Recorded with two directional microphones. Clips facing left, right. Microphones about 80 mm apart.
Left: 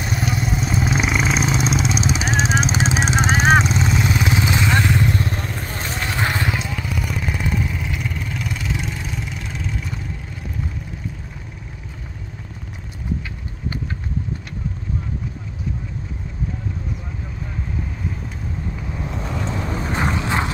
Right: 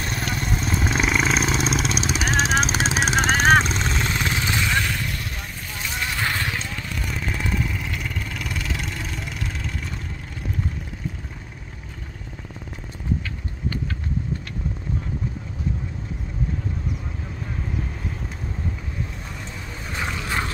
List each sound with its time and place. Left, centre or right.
0.0 s vehicle: centre; by 5.3 s left
5.4 s vehicle: left
5.7 s vehicle: left; by 9.9 s centre
19.0 s vehicle: left
19.8 s boat: left
20.2 s boat: left